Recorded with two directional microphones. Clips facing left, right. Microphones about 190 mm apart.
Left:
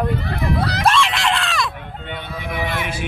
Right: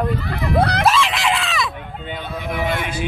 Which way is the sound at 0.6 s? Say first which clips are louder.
Right 5 dB; 55° right (ahead or behind).